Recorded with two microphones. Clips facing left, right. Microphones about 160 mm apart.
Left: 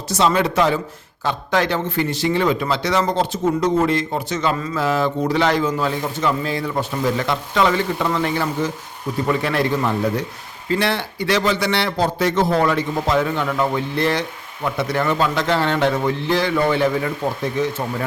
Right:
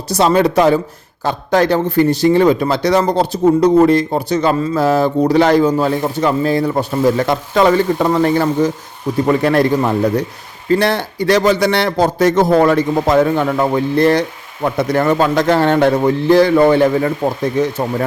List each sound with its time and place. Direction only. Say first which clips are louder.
0.1 s a man's voice: right 6 dB; 40° right (ahead or behind)